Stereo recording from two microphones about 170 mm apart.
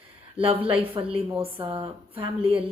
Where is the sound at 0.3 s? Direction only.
35° right (ahead or behind).